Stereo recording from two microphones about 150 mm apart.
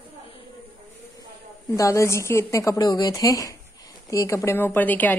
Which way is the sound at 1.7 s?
20° left (ahead or behind).